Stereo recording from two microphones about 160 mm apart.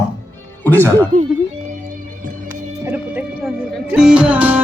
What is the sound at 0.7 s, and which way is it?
Speech, 10° left (ahead or behind).